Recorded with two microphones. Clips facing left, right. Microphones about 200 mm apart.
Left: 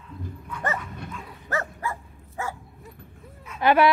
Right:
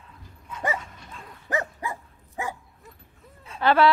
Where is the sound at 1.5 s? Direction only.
15° right (ahead or behind).